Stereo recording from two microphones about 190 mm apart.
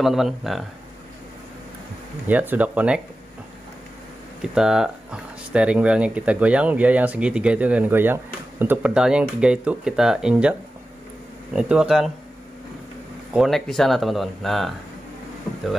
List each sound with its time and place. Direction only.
0.0 s speech: centre (ahead or behind)
2.2 s speech: 10° right (ahead or behind)
4.4 s speech: 5° right (ahead or behind)
11.5 s speech: 5° right (ahead or behind)
13.3 s speech: centre (ahead or behind)